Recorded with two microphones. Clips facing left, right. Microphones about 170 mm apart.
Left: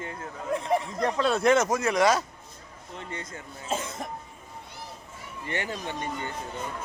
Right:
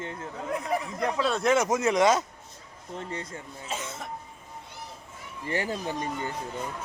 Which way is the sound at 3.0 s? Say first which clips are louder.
Right 2 dB; 35° right (ahead or behind).